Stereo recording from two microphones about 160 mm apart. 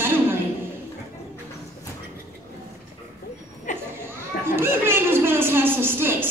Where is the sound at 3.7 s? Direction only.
50° left (ahead or behind).